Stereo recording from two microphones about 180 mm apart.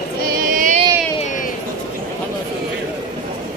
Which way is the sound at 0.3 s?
50° right (ahead or behind).